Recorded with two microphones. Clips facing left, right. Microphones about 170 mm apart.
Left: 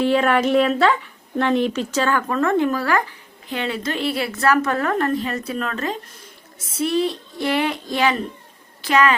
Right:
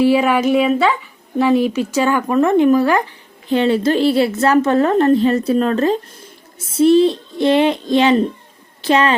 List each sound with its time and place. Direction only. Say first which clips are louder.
0.0 s speech: right 4 dB; 5° right (ahead or behind)
3.5 s a woman's voice: right 10 dB; 30° right (ahead or behind)